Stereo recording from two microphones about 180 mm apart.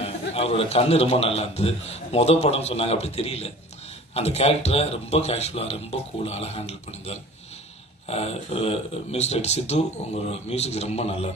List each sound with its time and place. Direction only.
0.0 s a man's voice: 35° left (ahead or behind)